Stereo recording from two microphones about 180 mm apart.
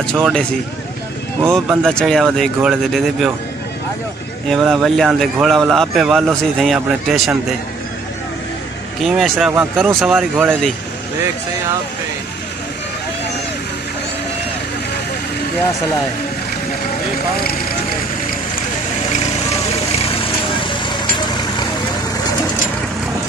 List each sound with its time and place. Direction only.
0.0 s speech: 5° left (ahead or behind)
1.4 s speech: 15° right (ahead or behind)
1.8 s speech: 5° left (ahead or behind)
4.5 s speech: centre (ahead or behind)
9.0 s speech: centre (ahead or behind)
20.1 s vehicle: 30° left (ahead or behind)